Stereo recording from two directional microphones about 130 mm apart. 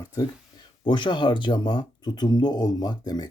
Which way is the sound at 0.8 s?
35° left (ahead or behind).